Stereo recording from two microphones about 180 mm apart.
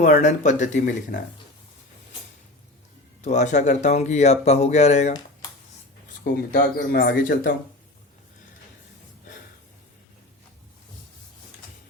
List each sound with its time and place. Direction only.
0.0 s speech: 45° left (ahead or behind)
3.2 s speech: 40° left (ahead or behind)
6.2 s speech: 65° left (ahead or behind)